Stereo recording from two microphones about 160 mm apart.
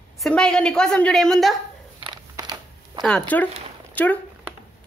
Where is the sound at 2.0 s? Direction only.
25° right (ahead or behind).